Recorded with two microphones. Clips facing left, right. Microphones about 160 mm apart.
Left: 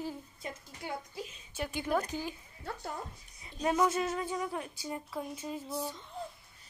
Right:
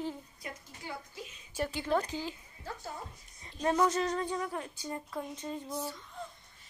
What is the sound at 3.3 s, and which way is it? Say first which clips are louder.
A woman's voice: right 1 dB; 10° left (ahead or behind).